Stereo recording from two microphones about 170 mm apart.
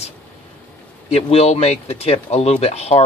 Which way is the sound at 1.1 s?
35° left (ahead or behind).